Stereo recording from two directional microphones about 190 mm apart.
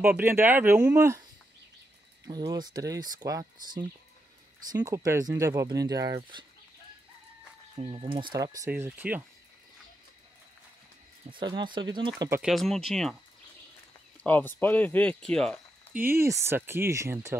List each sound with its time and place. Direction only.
0.0 s speech: 10° right (ahead or behind)
2.2 s speech: 20° right (ahead or behind)
7.7 s speech: 30° right (ahead or behind); by 9.2 s 10° right (ahead or behind)
11.2 s speech: 25° right (ahead or behind)
12.4 s speech: centre (ahead or behind)
16.0 s speech: 15° right (ahead or behind)